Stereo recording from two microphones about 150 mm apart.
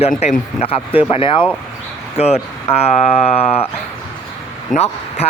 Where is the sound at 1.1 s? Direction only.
35° left (ahead or behind).